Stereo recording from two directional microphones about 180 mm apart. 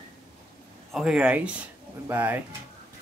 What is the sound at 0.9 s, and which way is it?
Speech, 5° right (ahead or behind).